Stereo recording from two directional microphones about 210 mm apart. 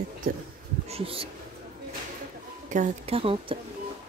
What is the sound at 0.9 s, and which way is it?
Speech, 25° right (ahead or behind).